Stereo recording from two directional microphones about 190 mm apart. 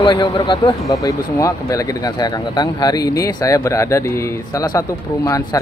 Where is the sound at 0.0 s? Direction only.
25° left (ahead or behind).